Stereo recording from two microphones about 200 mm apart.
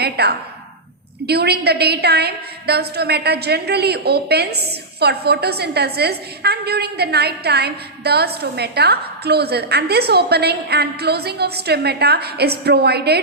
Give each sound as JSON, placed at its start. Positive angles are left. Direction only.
{"t": 0.0, "sound": "a woman's voice", "side_deg": -55}